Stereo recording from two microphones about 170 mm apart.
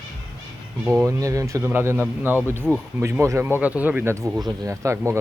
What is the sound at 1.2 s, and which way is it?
Speech, 20° right (ahead or behind).